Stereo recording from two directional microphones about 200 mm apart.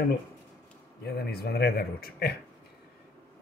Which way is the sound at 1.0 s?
50° left (ahead or behind).